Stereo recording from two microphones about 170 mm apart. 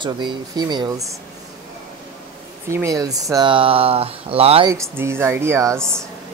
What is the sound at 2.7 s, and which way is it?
Speech, 20° right (ahead or behind).